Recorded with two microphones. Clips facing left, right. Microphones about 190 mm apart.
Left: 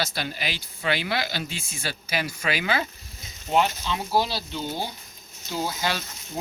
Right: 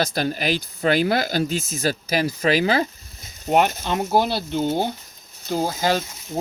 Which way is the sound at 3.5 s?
55° right (ahead or behind).